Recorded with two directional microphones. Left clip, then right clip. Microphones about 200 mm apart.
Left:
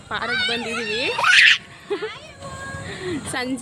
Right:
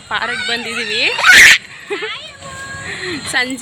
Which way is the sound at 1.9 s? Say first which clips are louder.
Right 5 dB; 10° right (ahead or behind).